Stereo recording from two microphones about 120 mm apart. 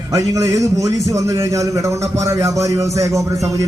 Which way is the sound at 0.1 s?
30° right (ahead or behind).